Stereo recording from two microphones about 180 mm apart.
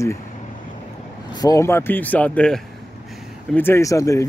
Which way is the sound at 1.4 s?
15° left (ahead or behind).